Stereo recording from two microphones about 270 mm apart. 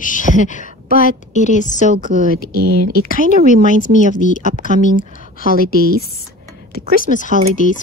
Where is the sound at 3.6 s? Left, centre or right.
Left.